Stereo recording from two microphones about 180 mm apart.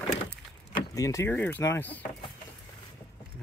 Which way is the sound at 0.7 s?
20° left (ahead or behind).